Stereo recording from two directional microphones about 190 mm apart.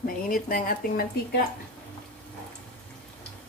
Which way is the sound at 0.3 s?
50° left (ahead or behind).